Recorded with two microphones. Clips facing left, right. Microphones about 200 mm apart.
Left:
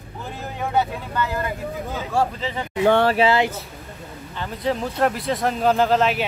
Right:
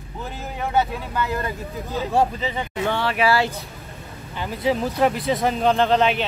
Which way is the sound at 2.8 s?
50° left (ahead or behind).